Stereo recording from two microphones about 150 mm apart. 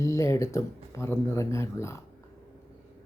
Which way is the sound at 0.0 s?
20° left (ahead or behind).